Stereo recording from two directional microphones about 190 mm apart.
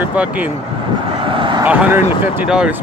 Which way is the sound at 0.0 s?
5° right (ahead or behind).